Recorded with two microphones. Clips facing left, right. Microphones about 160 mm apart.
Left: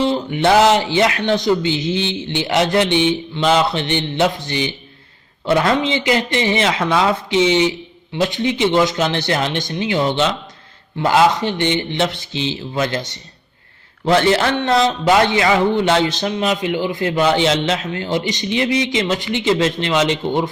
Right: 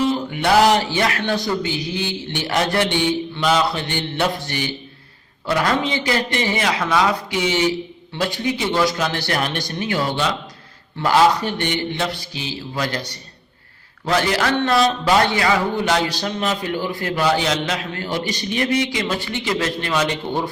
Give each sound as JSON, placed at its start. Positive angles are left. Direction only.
{"t": 0.0, "sound": "speech", "side_deg": 25}